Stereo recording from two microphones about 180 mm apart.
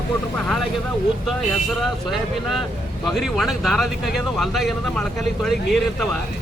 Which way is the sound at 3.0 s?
Centre (ahead or behind).